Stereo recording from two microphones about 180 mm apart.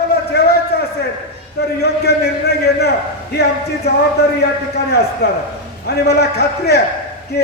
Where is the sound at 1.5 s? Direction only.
65° left (ahead or behind).